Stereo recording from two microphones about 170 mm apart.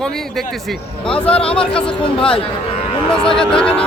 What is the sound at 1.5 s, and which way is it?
Speech, 5° left (ahead or behind).